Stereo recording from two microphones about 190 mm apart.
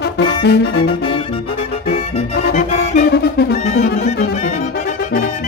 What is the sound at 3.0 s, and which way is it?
Music, 60° left (ahead or behind).